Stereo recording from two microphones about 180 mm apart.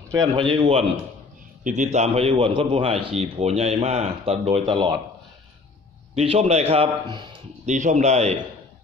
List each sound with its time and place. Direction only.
0.1 s a man's voice: 20° right (ahead or behind)
1.6 s a man's voice: 40° right (ahead or behind)
6.1 s a man's voice: 35° right (ahead or behind)
7.6 s a man's voice: 45° right (ahead or behind)